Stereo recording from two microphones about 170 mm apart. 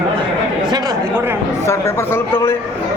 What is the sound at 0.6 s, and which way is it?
Speech, 20° right (ahead or behind).